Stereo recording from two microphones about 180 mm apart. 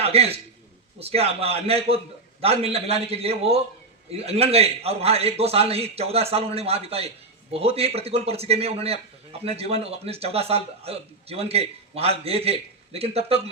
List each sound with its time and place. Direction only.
0.0 s a man's voice: 35° right (ahead or behind)